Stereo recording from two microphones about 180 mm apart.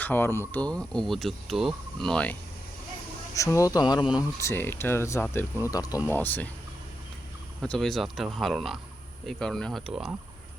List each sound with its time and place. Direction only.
0.0 s speech: 10° left (ahead or behind)
3.3 s mantra: 15° left (ahead or behind)
4.2 s speech: 15° left (ahead or behind)
7.6 s speech: 5° left (ahead or behind)